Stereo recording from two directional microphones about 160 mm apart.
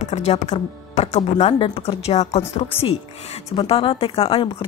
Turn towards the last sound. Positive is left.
turn(degrees=35)  # may be behind; listen again after turning